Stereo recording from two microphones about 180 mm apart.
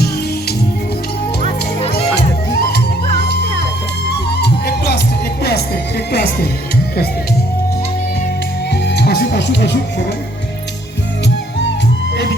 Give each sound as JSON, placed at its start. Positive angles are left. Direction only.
{"t": 2.5, "sound": "music", "side_deg": 60}
{"t": 4.4, "sound": "music", "side_deg": 65}
{"t": 8.7, "sound": "music", "side_deg": 70}